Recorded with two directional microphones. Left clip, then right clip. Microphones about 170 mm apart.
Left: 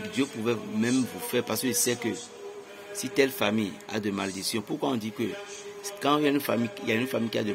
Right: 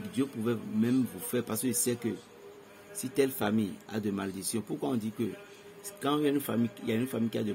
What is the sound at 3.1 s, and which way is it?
Speech, 15° right (ahead or behind).